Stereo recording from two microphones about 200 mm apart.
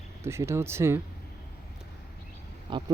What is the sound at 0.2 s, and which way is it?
Speech, 15° right (ahead or behind).